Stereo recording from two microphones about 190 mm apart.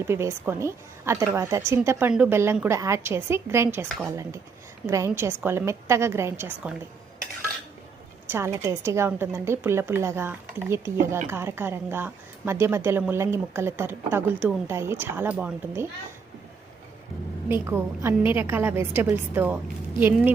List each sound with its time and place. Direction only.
0.0 s a woman's voice: 15° right (ahead or behind)
3.8 s speech: centre (ahead or behind)
4.1 s a woman's voice: 15° right (ahead or behind)
8.3 s a woman's voice: 15° right (ahead or behind)
17.5 s a woman's voice: 15° right (ahead or behind)